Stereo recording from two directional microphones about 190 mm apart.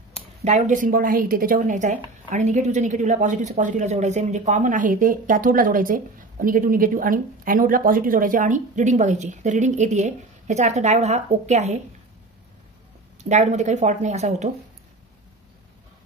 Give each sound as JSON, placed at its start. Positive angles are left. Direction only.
{"t": 0.4, "sound": "a woman's voice", "side_deg": -35}
{"t": 13.2, "sound": "a woman's voice", "side_deg": -35}